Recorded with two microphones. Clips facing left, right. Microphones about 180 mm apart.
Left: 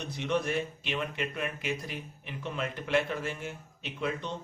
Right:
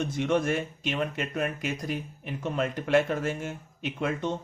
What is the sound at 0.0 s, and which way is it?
Speech, 50° right (ahead or behind).